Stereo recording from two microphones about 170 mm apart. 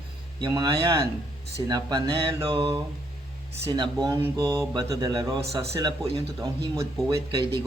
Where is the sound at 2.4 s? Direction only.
30° right (ahead or behind).